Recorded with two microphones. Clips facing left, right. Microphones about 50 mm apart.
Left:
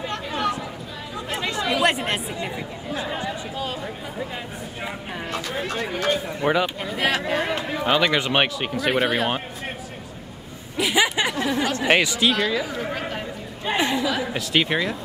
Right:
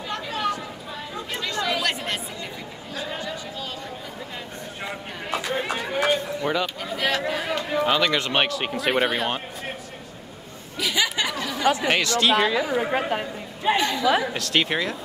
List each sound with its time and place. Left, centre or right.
0.1 s chatter: centre
1.3 s chatter: centre
5.3 s run: centre
6.4 s speech: centre
10.8 s speech: left
11.9 s speech: centre
12.4 s a man's voice: centre
13.7 s speech: centre
14.2 s speech: centre